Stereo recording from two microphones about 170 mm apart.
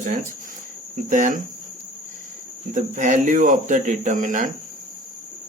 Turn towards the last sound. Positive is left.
turn(degrees=-50)  # may be behind; listen again after turning